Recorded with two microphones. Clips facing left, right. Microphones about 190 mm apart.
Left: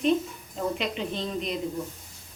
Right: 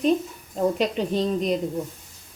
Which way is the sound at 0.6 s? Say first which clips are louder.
Right 7 dB; 40° right (ahead or behind).